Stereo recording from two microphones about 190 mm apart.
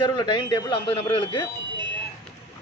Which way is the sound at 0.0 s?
25° left (ahead or behind).